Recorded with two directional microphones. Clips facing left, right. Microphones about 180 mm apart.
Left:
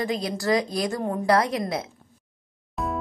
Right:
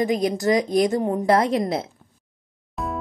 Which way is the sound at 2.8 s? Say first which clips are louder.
Even; centre (ahead or behind).